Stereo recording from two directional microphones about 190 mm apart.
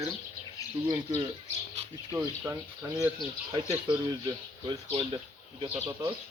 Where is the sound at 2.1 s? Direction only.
15° right (ahead or behind).